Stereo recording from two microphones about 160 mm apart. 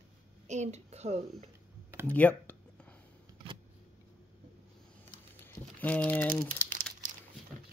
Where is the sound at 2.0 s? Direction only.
10° left (ahead or behind).